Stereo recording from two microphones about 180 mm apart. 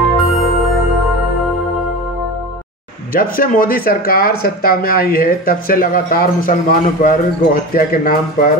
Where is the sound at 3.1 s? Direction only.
55° left (ahead or behind).